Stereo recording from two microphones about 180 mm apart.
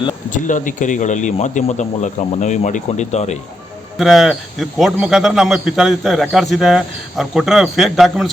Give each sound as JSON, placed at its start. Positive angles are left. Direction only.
{"t": 0.3, "sound": "speech", "side_deg": 45}
{"t": 3.9, "sound": "speech", "side_deg": 0}